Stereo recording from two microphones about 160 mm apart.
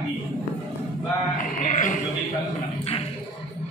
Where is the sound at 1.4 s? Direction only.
55° left (ahead or behind).